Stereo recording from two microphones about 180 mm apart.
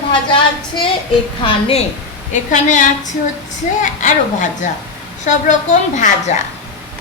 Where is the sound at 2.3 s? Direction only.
45° left (ahead or behind).